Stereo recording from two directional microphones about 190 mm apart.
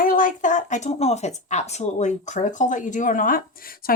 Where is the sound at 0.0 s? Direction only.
45° left (ahead or behind).